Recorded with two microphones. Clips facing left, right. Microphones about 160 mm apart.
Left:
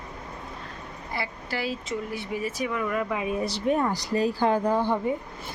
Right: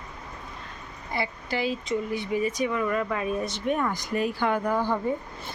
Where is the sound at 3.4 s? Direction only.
30° left (ahead or behind).